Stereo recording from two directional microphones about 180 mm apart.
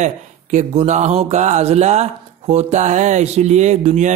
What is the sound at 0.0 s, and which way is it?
Speech, 40° right (ahead or behind).